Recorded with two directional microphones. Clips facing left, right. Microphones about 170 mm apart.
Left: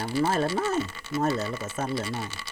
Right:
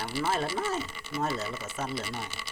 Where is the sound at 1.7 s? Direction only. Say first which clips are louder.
Left 5 dB; 45° left (ahead or behind).